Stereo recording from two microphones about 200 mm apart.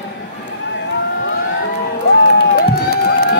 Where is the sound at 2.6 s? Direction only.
50° left (ahead or behind).